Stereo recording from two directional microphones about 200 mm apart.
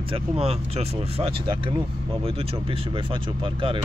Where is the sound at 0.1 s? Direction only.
30° right (ahead or behind).